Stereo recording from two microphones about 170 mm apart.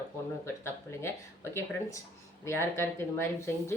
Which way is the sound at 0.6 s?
15° left (ahead or behind).